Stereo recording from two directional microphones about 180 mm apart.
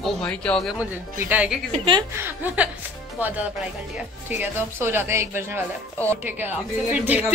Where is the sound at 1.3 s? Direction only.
5° right (ahead or behind).